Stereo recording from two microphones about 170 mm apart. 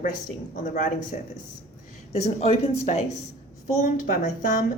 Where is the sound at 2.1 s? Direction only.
40° left (ahead or behind).